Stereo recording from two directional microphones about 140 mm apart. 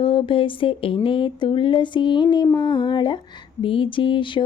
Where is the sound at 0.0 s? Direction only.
40° left (ahead or behind).